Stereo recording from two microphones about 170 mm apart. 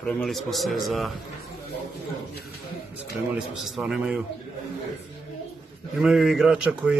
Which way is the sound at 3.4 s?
Centre (ahead or behind).